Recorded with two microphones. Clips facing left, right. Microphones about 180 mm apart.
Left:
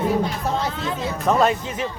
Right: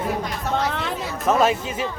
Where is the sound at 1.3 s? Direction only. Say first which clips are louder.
Even; 5° right (ahead or behind).